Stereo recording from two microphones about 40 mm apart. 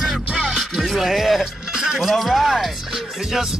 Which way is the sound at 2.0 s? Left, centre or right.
Centre.